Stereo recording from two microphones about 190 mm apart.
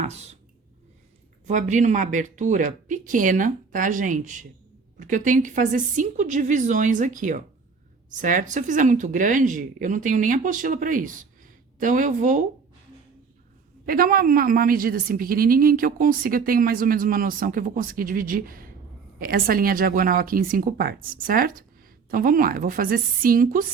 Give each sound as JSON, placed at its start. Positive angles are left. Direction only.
{"t": 0.0, "sound": "a sound", "side_deg": -35}
{"t": 1.5, "sound": "a woman's voice", "side_deg": -40}
{"t": 13.8, "sound": "a woman's voice", "side_deg": -50}